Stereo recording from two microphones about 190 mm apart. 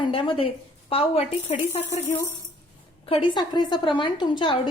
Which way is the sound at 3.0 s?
30° left (ahead or behind).